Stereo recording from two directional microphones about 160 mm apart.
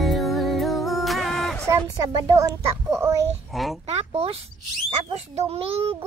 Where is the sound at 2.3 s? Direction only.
20° right (ahead or behind).